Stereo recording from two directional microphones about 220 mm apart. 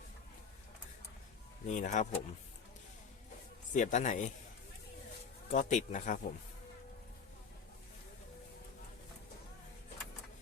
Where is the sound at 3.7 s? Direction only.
35° left (ahead or behind).